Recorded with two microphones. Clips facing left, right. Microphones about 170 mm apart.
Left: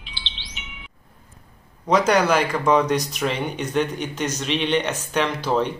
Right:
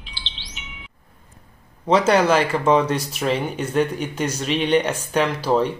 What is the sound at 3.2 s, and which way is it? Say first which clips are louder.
Speech: right 2 dB; 5° right (ahead or behind).